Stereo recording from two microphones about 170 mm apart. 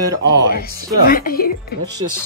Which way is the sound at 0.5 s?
60° left (ahead or behind).